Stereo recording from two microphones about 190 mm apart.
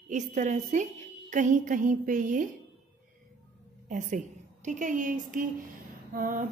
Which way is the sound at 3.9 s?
40° right (ahead or behind).